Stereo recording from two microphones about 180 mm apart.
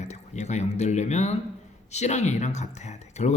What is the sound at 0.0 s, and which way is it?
Speech, 40° left (ahead or behind).